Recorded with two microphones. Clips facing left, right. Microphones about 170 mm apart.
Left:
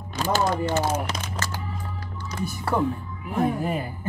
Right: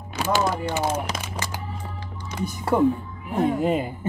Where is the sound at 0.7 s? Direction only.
10° right (ahead or behind).